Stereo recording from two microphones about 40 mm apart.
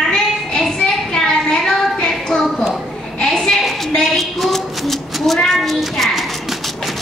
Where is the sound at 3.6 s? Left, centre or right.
Centre.